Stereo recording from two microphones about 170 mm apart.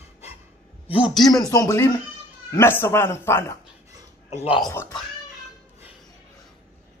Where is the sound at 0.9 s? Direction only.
5° right (ahead or behind).